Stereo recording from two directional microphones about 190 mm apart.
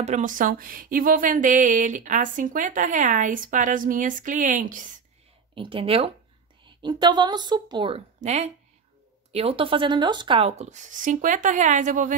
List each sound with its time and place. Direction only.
0.0 s speech: 40° right (ahead or behind)
5.5 s a woman's voice: 25° right (ahead or behind)
8.2 s speech: 35° right (ahead or behind)